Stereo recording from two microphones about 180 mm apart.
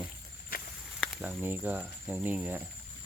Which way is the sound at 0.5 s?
55° left (ahead or behind).